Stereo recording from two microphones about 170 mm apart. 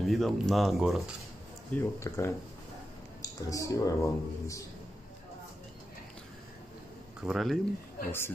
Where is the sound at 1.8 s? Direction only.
15° left (ahead or behind).